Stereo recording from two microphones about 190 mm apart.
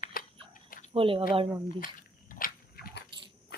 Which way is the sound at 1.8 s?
45° left (ahead or behind).